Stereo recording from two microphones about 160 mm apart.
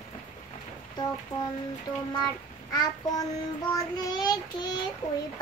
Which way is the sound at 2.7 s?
25° left (ahead or behind).